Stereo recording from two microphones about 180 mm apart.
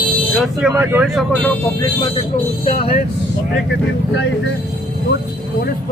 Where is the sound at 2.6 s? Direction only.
35° left (ahead or behind).